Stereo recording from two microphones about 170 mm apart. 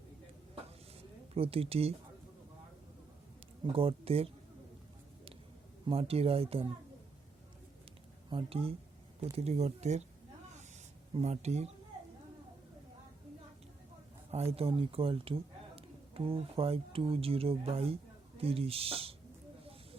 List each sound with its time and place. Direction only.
1.3 s speech: 35° right (ahead or behind)
3.7 s speech: 35° right (ahead or behind)
5.8 s speech: 35° right (ahead or behind)
8.3 s speech: 30° right (ahead or behind)
11.1 s speech: 40° right (ahead or behind)
14.3 s speech: 35° right (ahead or behind)